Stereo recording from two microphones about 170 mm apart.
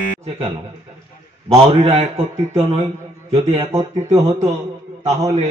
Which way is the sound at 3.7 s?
20° right (ahead or behind).